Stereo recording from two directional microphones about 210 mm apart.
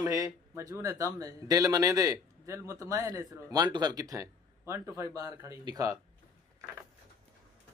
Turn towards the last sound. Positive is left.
turn(degrees=-15)  # may be behind; listen again after turning